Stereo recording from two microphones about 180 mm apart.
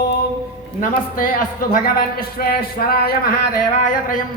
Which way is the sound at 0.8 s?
50° left (ahead or behind).